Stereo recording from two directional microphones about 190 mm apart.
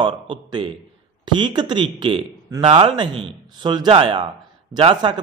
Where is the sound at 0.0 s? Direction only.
25° right (ahead or behind).